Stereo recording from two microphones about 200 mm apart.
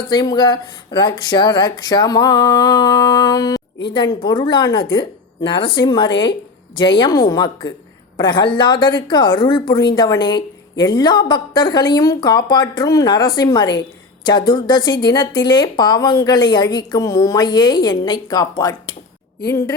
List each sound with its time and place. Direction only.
0.1 s a woman's voice: 20° left (ahead or behind)